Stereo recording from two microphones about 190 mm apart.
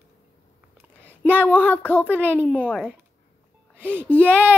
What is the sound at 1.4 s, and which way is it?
Speech, 10° left (ahead or behind).